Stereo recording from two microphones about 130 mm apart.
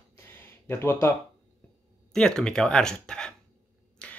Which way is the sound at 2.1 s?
5° left (ahead or behind).